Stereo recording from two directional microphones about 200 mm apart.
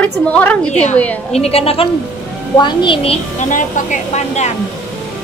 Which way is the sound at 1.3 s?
30° left (ahead or behind).